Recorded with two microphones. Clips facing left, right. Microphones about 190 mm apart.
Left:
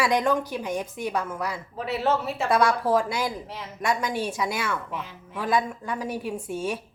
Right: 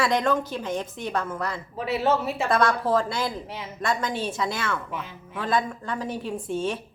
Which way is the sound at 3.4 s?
Centre (ahead or behind).